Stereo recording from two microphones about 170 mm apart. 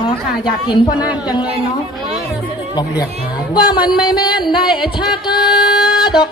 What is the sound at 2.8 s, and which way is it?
Speech, 25° left (ahead or behind).